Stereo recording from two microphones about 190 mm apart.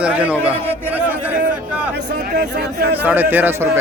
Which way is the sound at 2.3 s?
60° right (ahead or behind).